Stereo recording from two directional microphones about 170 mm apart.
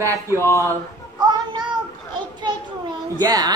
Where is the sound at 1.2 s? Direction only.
25° right (ahead or behind).